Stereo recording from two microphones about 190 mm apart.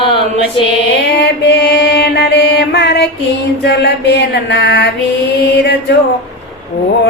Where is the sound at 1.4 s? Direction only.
65° left (ahead or behind).